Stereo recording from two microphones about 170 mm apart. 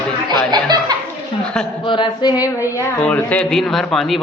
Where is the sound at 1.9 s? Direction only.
25° left (ahead or behind).